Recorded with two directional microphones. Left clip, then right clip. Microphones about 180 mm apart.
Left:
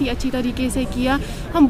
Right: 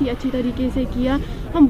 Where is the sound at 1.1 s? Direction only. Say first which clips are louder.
Left 2 dB; 25° left (ahead or behind).